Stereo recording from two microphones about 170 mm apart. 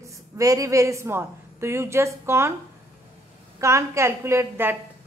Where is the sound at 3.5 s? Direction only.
15° right (ahead or behind).